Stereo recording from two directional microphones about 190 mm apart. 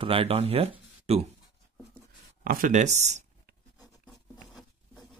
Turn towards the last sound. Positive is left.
turn(degrees=-35)  # may be behind; listen again after turning